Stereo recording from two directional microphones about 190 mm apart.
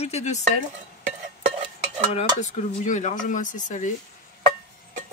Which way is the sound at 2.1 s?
40° left (ahead or behind).